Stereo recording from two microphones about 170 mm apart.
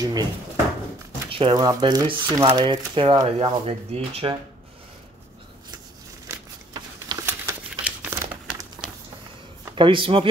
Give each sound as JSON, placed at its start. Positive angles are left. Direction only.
{"t": 0.0, "sound": "drawer open or close", "side_deg": -25}
{"t": 1.3, "sound": "speech", "side_deg": -30}
{"t": 6.2, "sound": "a sound", "side_deg": -25}
{"t": 7.2, "sound": "crumpling", "side_deg": -10}
{"t": 9.8, "sound": "speech", "side_deg": -30}